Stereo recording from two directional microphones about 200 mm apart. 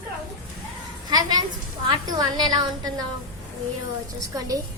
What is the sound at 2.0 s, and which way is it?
Speech, 20° right (ahead or behind).